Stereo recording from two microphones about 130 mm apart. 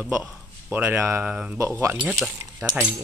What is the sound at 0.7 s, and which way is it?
Speech, 15° right (ahead or behind).